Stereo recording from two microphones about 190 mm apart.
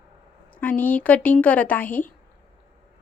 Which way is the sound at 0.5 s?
10° left (ahead or behind).